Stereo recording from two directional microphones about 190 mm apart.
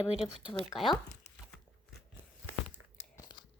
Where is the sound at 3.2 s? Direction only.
25° left (ahead or behind).